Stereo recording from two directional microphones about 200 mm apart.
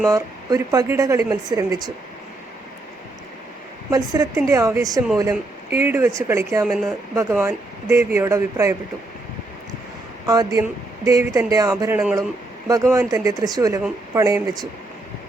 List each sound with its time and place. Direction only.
0.1 s speech: 15° right (ahead or behind)
3.8 s speech: 15° right (ahead or behind)
10.2 s speech: 15° right (ahead or behind)